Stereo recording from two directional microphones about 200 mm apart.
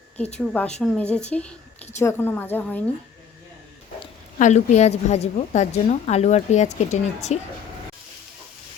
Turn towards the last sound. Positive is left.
turn(degrees=35)  # may be behind; listen again after turning